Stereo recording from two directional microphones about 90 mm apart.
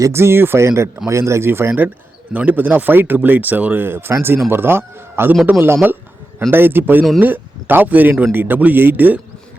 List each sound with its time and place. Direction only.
0.0 s a man's voice: 30° right (ahead or behind)